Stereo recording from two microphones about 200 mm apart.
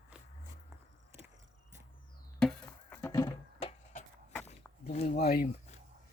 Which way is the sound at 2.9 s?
15° left (ahead or behind).